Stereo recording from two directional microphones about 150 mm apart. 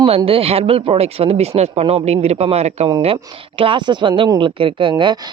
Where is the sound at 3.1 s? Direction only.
35° right (ahead or behind).